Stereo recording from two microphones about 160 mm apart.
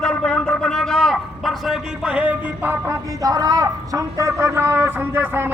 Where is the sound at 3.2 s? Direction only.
25° right (ahead or behind).